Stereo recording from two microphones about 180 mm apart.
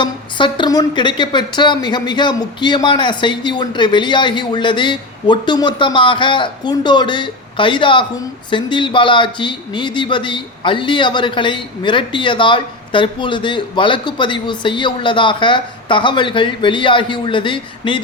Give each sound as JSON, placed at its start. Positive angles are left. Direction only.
{"t": 0.0, "sound": "a man's voice", "side_deg": 25}